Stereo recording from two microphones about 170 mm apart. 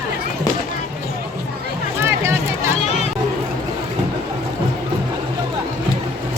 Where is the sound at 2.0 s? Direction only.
15° right (ahead or behind).